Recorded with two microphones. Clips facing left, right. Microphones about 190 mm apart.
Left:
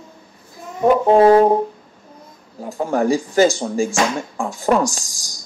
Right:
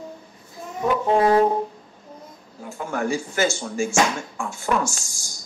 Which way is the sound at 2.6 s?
35° left (ahead or behind).